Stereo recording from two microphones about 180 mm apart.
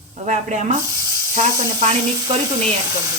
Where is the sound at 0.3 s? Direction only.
40° right (ahead or behind).